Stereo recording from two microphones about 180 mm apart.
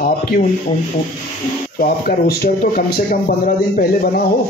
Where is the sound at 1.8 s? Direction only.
60° left (ahead or behind).